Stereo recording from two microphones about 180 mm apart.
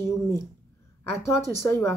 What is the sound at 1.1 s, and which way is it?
Speech, 15° left (ahead or behind).